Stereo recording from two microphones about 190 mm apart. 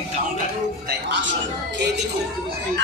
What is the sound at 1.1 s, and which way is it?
Speech, 75° right (ahead or behind).